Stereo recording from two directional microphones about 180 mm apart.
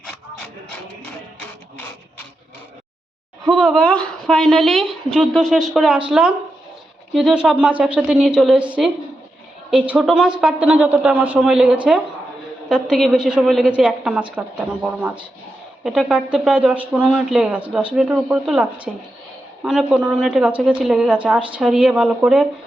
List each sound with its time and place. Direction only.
3.5 s speech: centre (ahead or behind)